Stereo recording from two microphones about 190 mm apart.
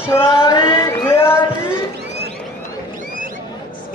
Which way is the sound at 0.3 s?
25° left (ahead or behind).